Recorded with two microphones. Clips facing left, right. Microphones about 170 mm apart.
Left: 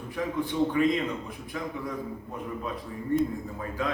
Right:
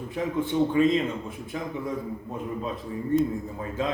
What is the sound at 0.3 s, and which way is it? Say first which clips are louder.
Speech: right 3 dB; 25° right (ahead or behind).